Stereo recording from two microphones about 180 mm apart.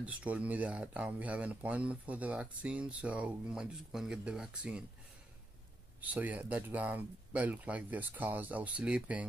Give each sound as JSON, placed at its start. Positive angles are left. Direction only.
{"t": 0.0, "sound": "speech", "side_deg": -5}
{"t": 5.9, "sound": "speech", "side_deg": -10}